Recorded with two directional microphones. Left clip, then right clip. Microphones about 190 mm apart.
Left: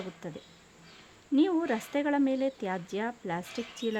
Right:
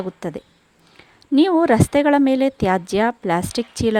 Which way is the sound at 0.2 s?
40° right (ahead or behind).